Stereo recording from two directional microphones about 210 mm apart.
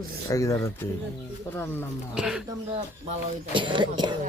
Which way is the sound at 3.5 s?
25° right (ahead or behind).